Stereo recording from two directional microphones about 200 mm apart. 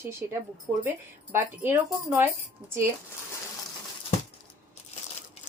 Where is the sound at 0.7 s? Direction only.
10° right (ahead or behind).